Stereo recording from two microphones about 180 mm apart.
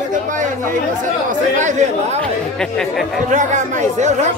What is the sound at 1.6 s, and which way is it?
Speech, 40° right (ahead or behind).